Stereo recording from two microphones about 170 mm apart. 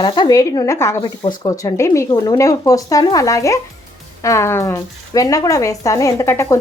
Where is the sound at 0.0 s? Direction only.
25° left (ahead or behind).